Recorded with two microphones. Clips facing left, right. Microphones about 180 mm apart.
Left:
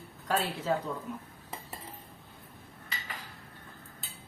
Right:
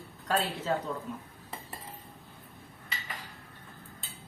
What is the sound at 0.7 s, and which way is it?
Speech, 5° left (ahead or behind).